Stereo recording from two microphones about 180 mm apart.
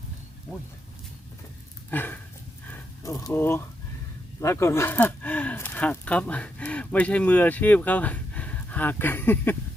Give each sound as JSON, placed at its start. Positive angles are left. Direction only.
{"t": 1.9, "sound": "dog", "side_deg": 10}
{"t": 2.6, "sound": "a sound", "side_deg": 15}
{"t": 4.4, "sound": "speech", "side_deg": 15}